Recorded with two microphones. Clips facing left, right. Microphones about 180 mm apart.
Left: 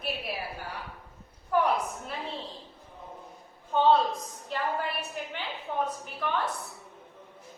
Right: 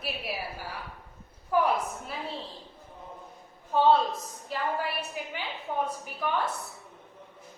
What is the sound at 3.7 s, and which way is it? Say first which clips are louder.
Speech: even; centre (ahead or behind).